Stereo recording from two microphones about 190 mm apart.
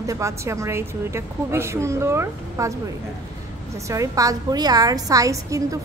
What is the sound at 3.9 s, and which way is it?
A woman's voice, 15° right (ahead or behind).